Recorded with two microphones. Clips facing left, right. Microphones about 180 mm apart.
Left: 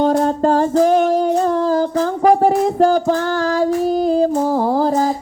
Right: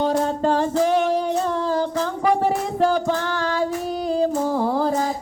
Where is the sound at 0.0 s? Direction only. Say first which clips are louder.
Left 5 dB; 45° left (ahead or behind).